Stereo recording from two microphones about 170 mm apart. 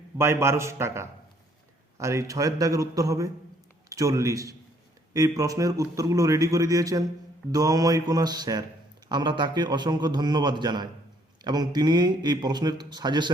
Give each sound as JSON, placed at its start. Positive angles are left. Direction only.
{"t": 0.2, "sound": "a man's voice", "side_deg": -15}